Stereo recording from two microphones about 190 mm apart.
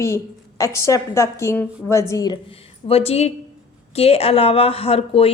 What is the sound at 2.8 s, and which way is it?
A woman's voice, 30° left (ahead or behind).